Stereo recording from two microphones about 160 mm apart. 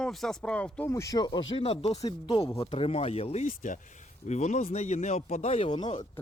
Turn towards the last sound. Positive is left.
turn(degrees=30)  # may be behind; listen again after turning